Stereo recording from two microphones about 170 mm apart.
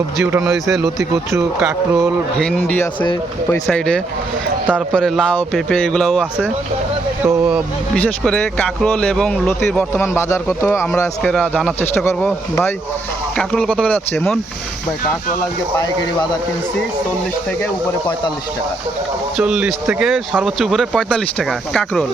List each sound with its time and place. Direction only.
0.4 s speech: centre (ahead or behind)
1.6 s a sound: 15° right (ahead or behind)
2.4 s speech: 5° left (ahead or behind)
7.2 s a sound: 10° right (ahead or behind)
7.9 s speech: 5° left (ahead or behind)
19.4 s speech: 5° right (ahead or behind)